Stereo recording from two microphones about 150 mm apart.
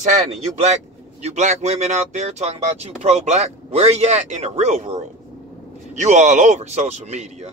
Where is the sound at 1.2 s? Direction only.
50° right (ahead or behind).